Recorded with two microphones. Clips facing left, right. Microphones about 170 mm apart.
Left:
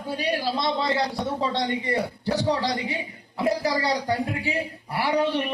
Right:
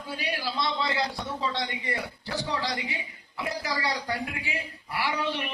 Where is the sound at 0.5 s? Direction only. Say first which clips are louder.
Left 5 dB; 50° left (ahead or behind).